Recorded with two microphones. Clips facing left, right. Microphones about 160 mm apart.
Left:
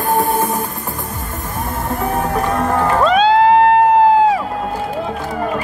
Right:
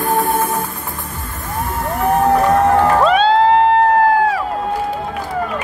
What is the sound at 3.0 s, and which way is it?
Music, centre (ahead or behind).